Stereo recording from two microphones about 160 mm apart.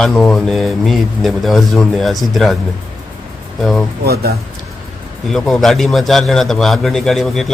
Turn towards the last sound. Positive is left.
turn(degrees=0)  # may be behind; listen again after turning